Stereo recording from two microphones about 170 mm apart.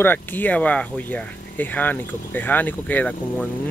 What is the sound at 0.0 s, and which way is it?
Speech, 10° left (ahead or behind).